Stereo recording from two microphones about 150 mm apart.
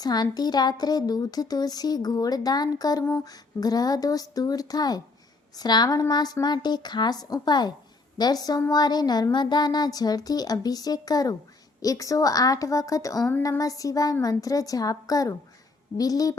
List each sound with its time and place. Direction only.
0.0 s a woman's voice: 25° left (ahead or behind)